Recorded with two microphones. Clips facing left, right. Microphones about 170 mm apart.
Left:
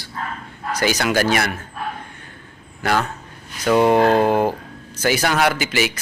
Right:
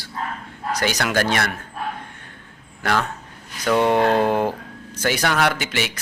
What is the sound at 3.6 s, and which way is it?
Speech, 5° left (ahead or behind).